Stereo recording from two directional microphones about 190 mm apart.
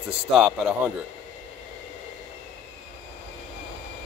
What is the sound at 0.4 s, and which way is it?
Speech, 5° right (ahead or behind).